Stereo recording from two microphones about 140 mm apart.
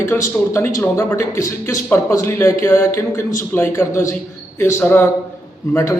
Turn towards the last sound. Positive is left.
turn(degrees=20)  # may be behind; listen again after turning